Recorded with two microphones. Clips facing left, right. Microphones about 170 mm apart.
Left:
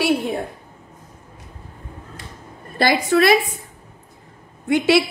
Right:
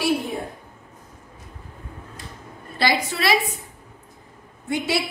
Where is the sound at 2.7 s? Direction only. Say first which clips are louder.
Left 6 dB; 50° left (ahead or behind).